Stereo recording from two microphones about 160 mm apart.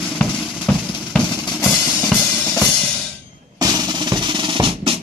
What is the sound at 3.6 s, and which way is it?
Drum, 25° right (ahead or behind).